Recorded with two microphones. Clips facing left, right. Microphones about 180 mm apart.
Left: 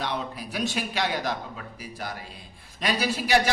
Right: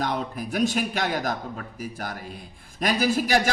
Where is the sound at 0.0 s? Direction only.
45° right (ahead or behind).